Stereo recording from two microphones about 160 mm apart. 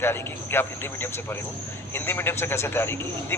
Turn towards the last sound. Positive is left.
turn(degrees=15)  # may be behind; listen again after turning